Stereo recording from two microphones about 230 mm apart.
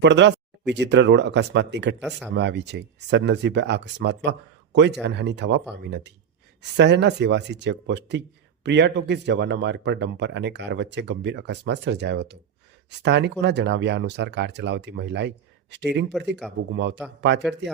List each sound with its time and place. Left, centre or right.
0.0 s speech: right
2.0 s speech: centre
2.3 s speech: right